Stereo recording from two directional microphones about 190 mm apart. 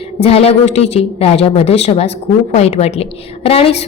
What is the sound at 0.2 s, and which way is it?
A woman's voice, 30° left (ahead or behind).